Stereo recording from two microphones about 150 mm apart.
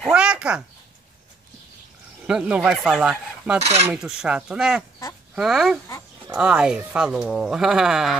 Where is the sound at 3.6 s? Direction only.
45° right (ahead or behind).